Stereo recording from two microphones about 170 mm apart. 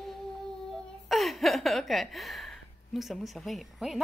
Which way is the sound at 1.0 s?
Centre (ahead or behind).